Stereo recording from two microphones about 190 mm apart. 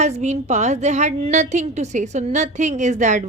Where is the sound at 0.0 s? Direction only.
35° right (ahead or behind).